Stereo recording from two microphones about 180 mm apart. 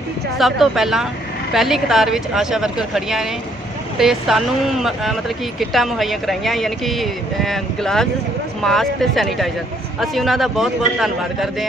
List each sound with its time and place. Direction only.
0.4 s speech: centre (ahead or behind)